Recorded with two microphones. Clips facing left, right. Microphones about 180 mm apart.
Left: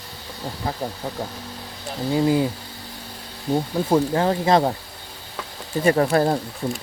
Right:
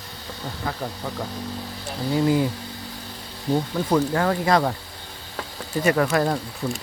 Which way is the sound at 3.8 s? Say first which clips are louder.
Left 2 dB; 25° left (ahead or behind).